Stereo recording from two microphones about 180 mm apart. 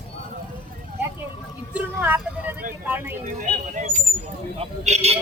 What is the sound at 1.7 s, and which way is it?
Vehicle, 10° right (ahead or behind).